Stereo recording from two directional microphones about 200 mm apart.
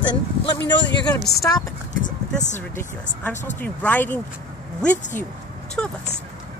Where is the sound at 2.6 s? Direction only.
10° left (ahead or behind).